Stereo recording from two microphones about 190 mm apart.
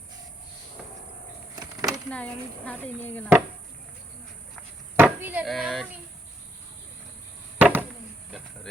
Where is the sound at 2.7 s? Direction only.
10° left (ahead or behind).